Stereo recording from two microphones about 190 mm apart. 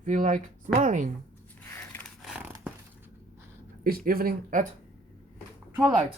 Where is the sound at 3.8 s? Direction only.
50° right (ahead or behind).